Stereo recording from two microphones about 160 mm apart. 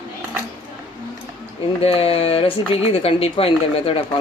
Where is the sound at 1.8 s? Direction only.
35° left (ahead or behind).